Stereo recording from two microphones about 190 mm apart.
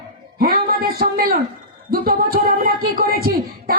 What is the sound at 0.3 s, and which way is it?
A man's voice, 55° right (ahead or behind).